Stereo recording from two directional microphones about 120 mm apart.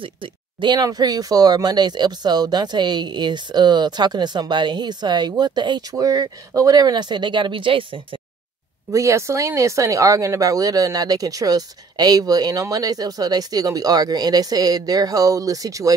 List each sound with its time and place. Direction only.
0.0 s speech: 45° right (ahead or behind)
8.9 s speech: 25° right (ahead or behind)